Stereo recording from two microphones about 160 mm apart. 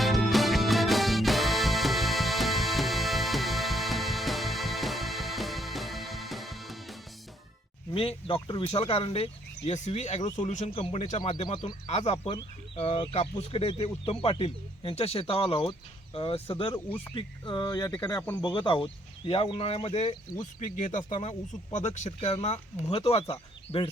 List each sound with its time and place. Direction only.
0.0 s music: centre (ahead or behind)
7.9 s speech: 35° left (ahead or behind); by 10.7 s 50° left (ahead or behind)
10.8 s speech: 35° left (ahead or behind)
11.9 s speech: 45° left (ahead or behind)
20.6 s speech: 50° left (ahead or behind)